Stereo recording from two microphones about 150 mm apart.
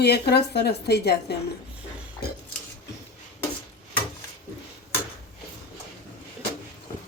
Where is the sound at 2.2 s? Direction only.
90° left.